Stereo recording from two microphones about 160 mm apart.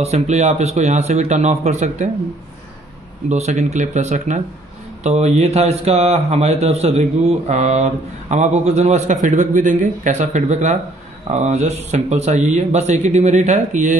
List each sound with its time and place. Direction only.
0.0 s speech: 45° right (ahead or behind)
3.3 s speech: 45° right (ahead or behind)